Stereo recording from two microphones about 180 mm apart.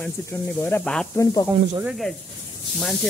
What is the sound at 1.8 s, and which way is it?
Speech, centre (ahead or behind).